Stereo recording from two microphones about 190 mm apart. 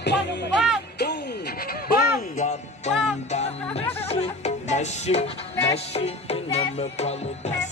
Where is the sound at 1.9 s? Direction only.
45° left (ahead or behind).